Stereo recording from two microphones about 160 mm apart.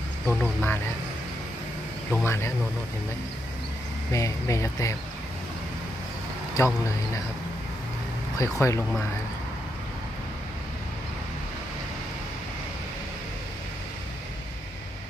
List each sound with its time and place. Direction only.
0.4 s speech: 10° left (ahead or behind)
2.2 s speech: 15° left (ahead or behind)
4.1 s speech: 20° left (ahead or behind)
6.6 s speech: 15° left (ahead or behind)
8.4 s speech: 20° left (ahead or behind)